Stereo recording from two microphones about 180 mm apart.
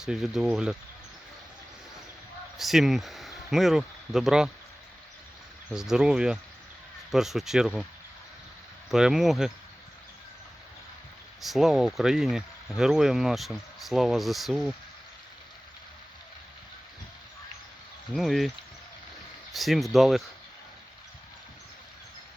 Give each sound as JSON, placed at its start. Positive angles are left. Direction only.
{"t": 0.0, "sound": "speech", "side_deg": 0}
{"t": 2.6, "sound": "speech", "side_deg": 0}
{"t": 5.7, "sound": "speech", "side_deg": -5}
{"t": 8.9, "sound": "speech", "side_deg": 0}
{"t": 11.3, "sound": "speech", "side_deg": 0}
{"t": 18.1, "sound": "speech", "side_deg": 0}
{"t": 19.5, "sound": "speech", "side_deg": 0}